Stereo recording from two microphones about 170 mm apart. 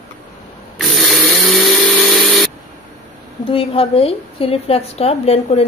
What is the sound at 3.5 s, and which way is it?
A woman's voice, 35° left (ahead or behind).